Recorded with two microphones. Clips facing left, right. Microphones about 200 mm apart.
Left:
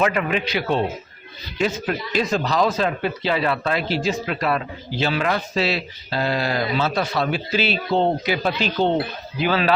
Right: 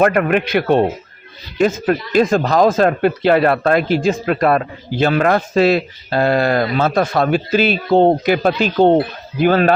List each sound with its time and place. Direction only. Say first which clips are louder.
0.0 s speech: right 7 dB; 55° right (ahead or behind)